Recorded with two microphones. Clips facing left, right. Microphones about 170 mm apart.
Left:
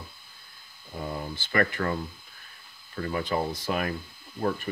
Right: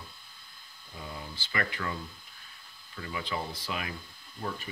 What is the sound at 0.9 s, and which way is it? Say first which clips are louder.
Speech: left 8 dB; 50° left (ahead or behind).